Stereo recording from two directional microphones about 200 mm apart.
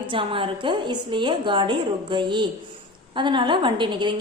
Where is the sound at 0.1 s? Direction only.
25° right (ahead or behind).